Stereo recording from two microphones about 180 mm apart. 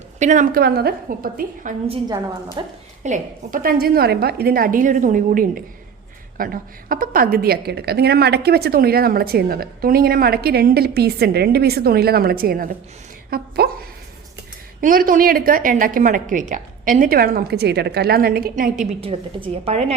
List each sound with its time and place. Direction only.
0.2 s a woman's voice: 45° right (ahead or behind)
2.6 s a woman's voice: 25° right (ahead or behind)
3.0 s a woman's voice: 45° right (ahead or behind)
18.9 s a woman's voice: 35° right (ahead or behind)